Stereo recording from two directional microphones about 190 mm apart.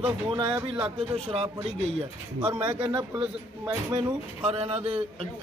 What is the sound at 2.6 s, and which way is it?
Speech, 25° right (ahead or behind).